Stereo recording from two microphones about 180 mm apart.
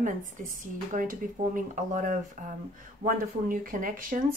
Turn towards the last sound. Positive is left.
turn(degrees=-50)  # may be behind; listen again after turning